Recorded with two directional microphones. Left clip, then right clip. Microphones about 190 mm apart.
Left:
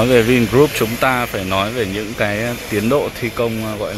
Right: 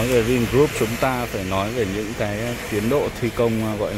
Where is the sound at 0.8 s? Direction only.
Centre (ahead or behind).